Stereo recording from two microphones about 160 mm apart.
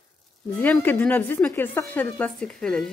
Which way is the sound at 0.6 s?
10° left (ahead or behind).